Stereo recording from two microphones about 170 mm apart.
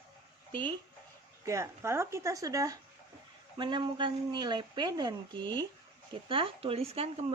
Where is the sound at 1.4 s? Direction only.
15° right (ahead or behind).